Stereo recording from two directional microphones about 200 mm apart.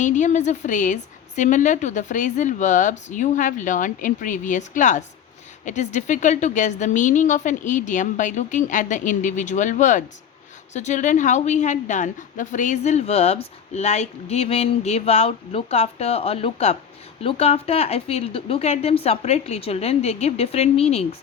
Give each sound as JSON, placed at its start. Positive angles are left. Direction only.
{"t": 0.0, "sound": "a woman's voice", "side_deg": 40}